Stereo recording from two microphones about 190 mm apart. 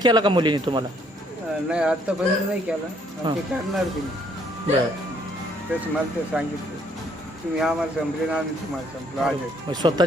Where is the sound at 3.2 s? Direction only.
25° right (ahead or behind).